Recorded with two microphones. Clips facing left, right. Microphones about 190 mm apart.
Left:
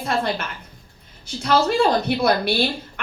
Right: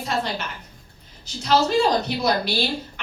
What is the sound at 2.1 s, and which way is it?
Speech, 60° left (ahead or behind).